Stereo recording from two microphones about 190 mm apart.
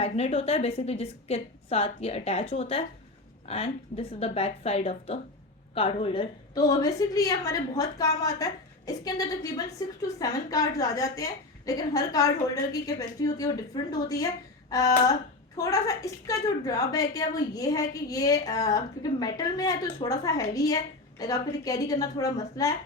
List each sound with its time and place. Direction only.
0.0 s a woman's voice: 30° left (ahead or behind)